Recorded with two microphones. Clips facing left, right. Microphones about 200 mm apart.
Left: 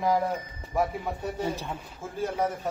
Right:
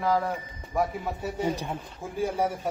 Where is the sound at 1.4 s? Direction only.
15° right (ahead or behind).